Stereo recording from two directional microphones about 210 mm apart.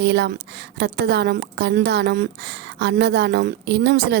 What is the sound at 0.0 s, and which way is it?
A woman's voice, 55° right (ahead or behind).